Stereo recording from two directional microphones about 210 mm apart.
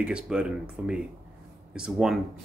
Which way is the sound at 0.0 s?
5° right (ahead or behind).